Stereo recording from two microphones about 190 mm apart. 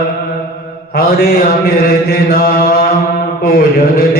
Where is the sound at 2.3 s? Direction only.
50° left (ahead or behind).